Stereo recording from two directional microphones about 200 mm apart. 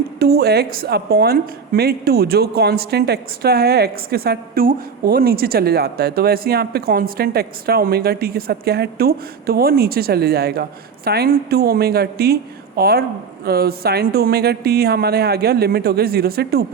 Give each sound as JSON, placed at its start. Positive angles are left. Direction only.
{"t": 0.2, "sound": "a woman's voice", "side_deg": -50}